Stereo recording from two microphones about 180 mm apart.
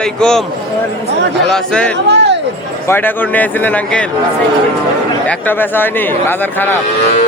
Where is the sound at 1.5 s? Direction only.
5° left (ahead or behind).